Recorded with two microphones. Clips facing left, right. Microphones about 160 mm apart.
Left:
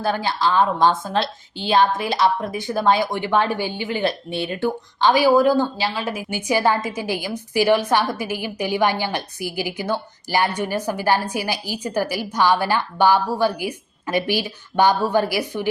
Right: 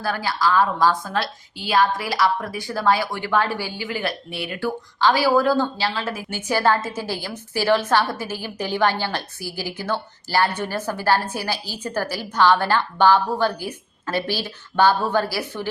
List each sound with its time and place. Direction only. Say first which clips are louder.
0.0 s a woman's voice: left 2 dB; 25° left (ahead or behind)